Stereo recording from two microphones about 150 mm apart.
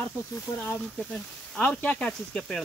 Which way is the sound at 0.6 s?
10° left (ahead or behind).